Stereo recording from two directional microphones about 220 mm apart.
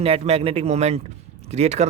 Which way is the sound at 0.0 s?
30° right (ahead or behind).